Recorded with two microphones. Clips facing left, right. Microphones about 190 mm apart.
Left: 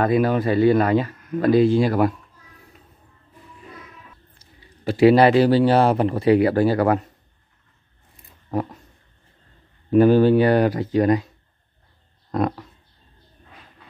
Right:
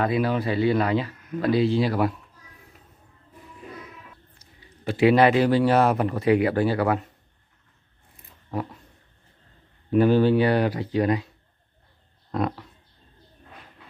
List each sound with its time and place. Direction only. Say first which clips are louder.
0.0 s speech: left 5 dB; 50° left (ahead or behind)
4.4 s a man's voice: left 1 dB; 35° left (ahead or behind)
9.8 s speech: left 4 dB; 45° left (ahead or behind)
12.3 s pig: left 4 dB; 45° left (ahead or behind)